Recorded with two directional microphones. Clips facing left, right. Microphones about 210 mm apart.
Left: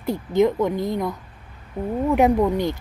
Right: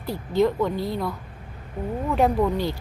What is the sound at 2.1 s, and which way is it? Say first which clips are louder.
Speech: left 3 dB; 20° left (ahead or behind).